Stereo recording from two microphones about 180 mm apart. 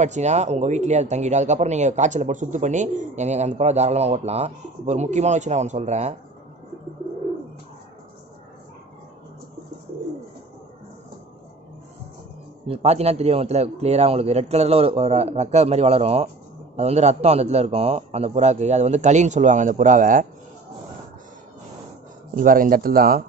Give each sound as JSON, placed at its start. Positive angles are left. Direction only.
{"t": 0.0, "sound": "speech", "side_deg": -40}
{"t": 12.6, "sound": "speech", "side_deg": -35}
{"t": 22.3, "sound": "speech", "side_deg": -50}